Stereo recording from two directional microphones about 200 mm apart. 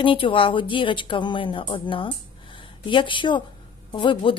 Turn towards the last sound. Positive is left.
turn(degrees=25)  # may be behind; listen again after turning